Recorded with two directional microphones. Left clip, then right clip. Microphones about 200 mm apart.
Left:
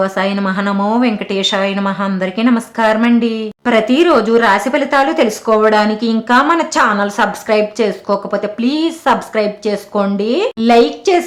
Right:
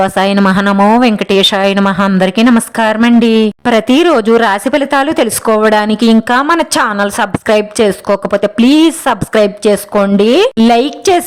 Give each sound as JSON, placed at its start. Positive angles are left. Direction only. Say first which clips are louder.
{"t": 0.0, "sound": "a woman's voice", "louder": "right 6 dB", "side_deg": -45}